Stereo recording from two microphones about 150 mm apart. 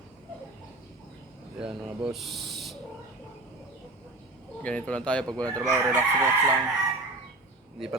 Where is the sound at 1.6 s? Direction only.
5° right (ahead or behind).